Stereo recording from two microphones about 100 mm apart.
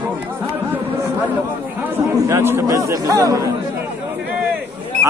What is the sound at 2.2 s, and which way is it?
Speech, 30° right (ahead or behind).